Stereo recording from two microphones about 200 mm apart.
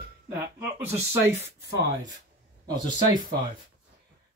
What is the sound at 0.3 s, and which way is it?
Speech, 10° right (ahead or behind).